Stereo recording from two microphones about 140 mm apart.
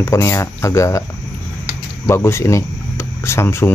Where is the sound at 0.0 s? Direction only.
20° left (ahead or behind).